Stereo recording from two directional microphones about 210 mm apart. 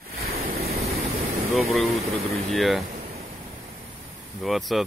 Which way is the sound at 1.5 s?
Centre (ahead or behind).